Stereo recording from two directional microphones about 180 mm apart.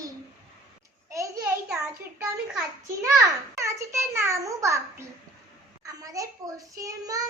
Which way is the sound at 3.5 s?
15° right (ahead or behind).